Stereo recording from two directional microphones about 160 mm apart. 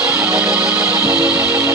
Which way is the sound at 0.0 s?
15° right (ahead or behind).